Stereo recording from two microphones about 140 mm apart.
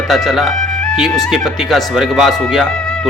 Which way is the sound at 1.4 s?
Centre (ahead or behind).